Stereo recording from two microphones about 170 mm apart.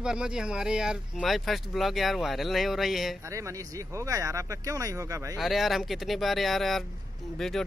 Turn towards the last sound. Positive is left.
turn(degrees=0)  # may be behind; listen again after turning